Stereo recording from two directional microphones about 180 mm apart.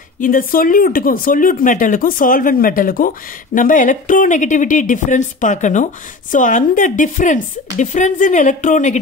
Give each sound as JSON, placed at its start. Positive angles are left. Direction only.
{"t": 0.2, "sound": "speech", "side_deg": 50}